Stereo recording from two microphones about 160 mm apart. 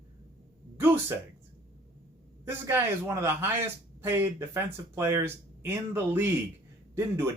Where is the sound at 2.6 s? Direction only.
15° right (ahead or behind).